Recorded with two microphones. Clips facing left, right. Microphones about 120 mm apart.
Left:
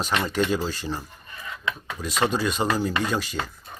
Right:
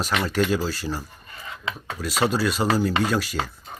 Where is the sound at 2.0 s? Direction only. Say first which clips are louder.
Right 2 dB; 5° right (ahead or behind).